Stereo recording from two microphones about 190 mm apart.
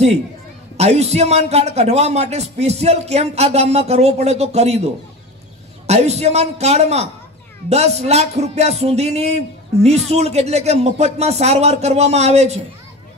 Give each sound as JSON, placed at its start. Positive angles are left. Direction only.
{"t": 0.7, "sound": "speech", "side_deg": -35}
{"t": 5.9, "sound": "speech", "side_deg": -35}